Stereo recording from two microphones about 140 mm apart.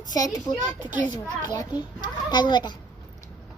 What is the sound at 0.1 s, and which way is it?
A child's voice, 25° left (ahead or behind).